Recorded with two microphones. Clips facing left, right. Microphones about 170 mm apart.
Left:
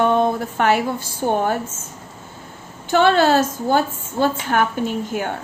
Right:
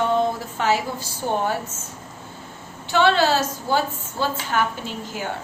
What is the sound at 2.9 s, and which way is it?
A woman's voice, 50° left (ahead or behind).